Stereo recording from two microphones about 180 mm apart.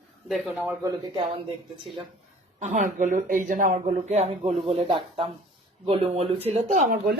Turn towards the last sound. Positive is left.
turn(degrees=-40)  # may be behind; listen again after turning